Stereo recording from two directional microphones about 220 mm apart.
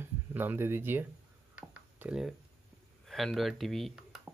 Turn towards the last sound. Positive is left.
turn(degrees=0)  # may be behind; listen again after turning